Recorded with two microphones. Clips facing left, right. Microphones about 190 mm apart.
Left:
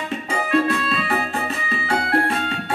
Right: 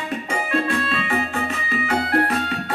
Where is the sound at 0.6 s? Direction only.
35° left (ahead or behind).